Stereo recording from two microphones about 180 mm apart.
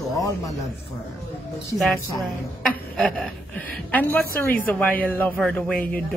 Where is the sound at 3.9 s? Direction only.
10° left (ahead or behind).